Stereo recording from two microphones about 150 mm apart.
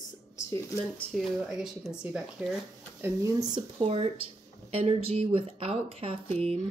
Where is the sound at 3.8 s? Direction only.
40° right (ahead or behind).